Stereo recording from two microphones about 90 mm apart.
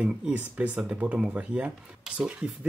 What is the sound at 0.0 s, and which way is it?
Speech, 15° right (ahead or behind).